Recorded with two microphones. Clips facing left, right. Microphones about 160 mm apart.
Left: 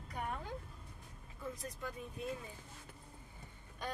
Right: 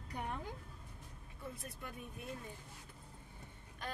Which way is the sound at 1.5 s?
90° left.